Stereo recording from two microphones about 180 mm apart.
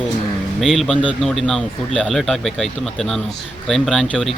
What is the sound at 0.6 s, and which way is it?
Speech, centre (ahead or behind).